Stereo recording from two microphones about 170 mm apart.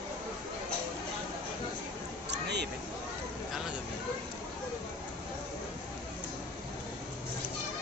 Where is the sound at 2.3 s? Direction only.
85° right.